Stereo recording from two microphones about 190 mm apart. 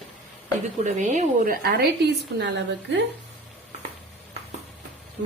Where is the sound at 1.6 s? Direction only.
60° right (ahead or behind).